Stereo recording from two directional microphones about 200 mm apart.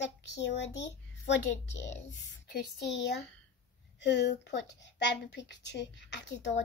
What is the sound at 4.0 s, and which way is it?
Speech, 60° left (ahead or behind).